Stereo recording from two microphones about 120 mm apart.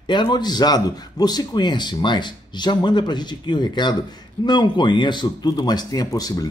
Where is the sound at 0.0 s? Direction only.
40° left (ahead or behind).